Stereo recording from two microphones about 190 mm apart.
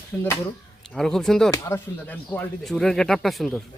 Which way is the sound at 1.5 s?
15° left (ahead or behind).